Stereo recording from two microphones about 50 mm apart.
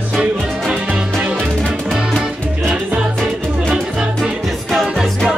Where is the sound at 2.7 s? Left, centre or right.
Centre.